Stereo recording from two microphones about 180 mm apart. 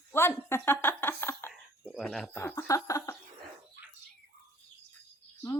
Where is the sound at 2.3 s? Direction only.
15° left (ahead or behind).